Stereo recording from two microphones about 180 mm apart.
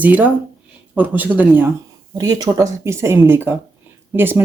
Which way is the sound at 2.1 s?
20° right (ahead or behind).